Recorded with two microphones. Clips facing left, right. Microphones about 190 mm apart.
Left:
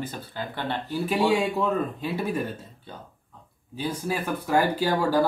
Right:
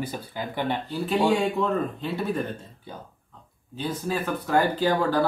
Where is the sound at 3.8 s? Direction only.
10° left (ahead or behind).